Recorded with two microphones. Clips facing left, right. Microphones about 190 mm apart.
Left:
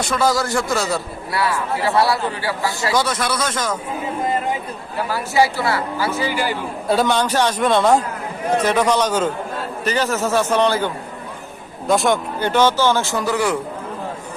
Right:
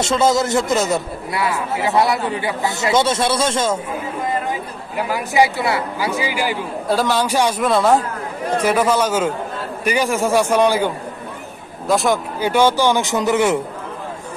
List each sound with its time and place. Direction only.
0.0 s speech: 25° right (ahead or behind)
4.9 s a man's voice: 15° right (ahead or behind)
11.9 s a man's voice: centre (ahead or behind); by 13.6 s 20° right (ahead or behind)